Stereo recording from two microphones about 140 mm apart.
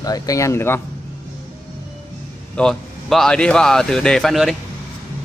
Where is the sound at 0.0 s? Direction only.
25° left (ahead or behind).